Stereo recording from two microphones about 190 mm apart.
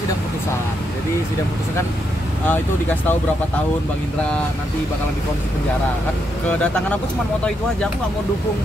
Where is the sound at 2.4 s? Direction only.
10° left (ahead or behind).